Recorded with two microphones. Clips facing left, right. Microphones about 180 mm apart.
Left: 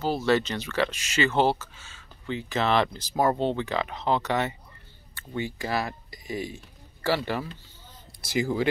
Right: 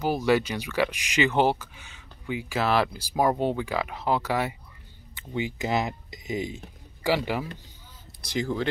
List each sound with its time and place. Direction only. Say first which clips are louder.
0.0 s speech: right 1 dB; 15° right (ahead or behind)
8.2 s speech: left 2 dB; 5° left (ahead or behind)